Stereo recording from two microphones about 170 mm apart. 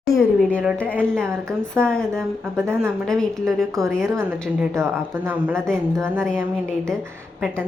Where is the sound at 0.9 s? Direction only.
15° right (ahead or behind).